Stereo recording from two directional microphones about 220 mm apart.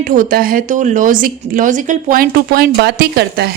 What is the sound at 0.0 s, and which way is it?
A woman's voice, 35° right (ahead or behind).